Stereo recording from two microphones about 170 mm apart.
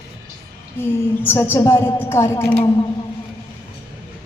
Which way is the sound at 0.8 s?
15° left (ahead or behind).